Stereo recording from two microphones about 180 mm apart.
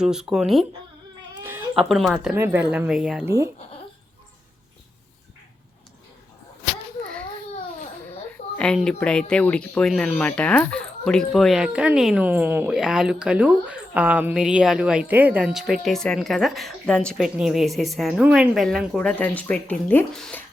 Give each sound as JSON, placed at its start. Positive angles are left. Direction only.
{"t": 0.0, "sound": "speech", "side_deg": -5}
{"t": 2.3, "sound": "speech", "side_deg": -10}
{"t": 3.2, "sound": "speech", "side_deg": -15}
{"t": 8.5, "sound": "speech", "side_deg": 5}